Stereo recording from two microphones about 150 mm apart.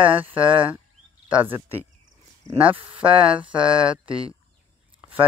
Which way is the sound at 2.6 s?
35° right (ahead or behind).